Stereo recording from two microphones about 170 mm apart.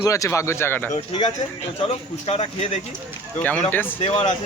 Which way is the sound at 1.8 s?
35° left (ahead or behind).